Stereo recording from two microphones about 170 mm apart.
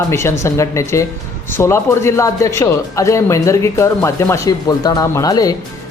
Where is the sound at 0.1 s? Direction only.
15° left (ahead or behind).